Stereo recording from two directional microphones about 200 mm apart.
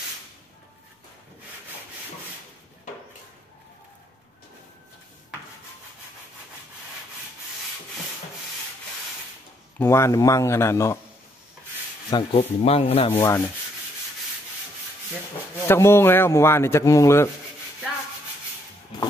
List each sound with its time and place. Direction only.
9.8 s a man's voice: 15° left (ahead or behind)
12.1 s speech: 25° left (ahead or behind)
13.1 s a man's voice: 15° left (ahead or behind)
15.7 s a man's voice: 10° left (ahead or behind)